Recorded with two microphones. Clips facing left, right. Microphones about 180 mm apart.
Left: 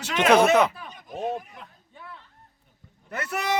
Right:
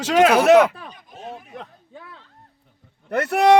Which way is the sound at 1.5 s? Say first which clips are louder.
Right 9 dB; 80° right.